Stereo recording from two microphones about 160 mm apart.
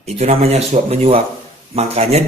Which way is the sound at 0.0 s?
40° right (ahead or behind).